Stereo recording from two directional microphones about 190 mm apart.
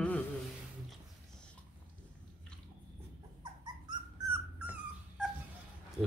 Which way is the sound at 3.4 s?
20° right (ahead or behind).